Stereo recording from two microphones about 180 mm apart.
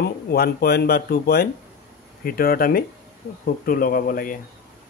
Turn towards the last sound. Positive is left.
turn(degrees=50)  # may be behind; listen again after turning